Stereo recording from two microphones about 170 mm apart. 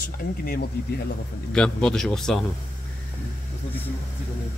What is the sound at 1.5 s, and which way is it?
Speech, 5° left (ahead or behind).